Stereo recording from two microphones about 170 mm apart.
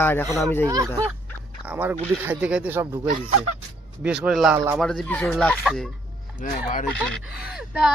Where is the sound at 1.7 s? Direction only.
10° right (ahead or behind).